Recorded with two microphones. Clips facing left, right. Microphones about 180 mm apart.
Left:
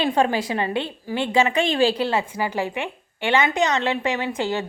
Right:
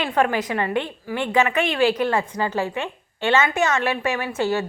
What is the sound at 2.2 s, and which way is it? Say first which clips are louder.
A woman's voice: right 1 dB; 10° left (ahead or behind).